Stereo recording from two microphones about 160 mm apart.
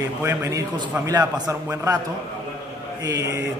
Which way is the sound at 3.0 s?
20° right (ahead or behind).